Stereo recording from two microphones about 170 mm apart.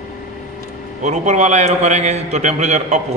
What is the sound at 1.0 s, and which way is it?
A man's voice, 45° right (ahead or behind).